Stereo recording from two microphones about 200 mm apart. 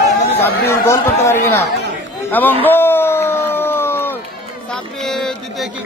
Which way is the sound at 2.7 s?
10° left (ahead or behind).